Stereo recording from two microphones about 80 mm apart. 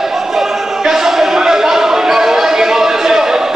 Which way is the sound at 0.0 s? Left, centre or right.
Centre.